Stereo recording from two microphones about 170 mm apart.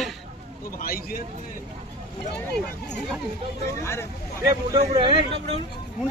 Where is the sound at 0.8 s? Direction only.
55° left (ahead or behind).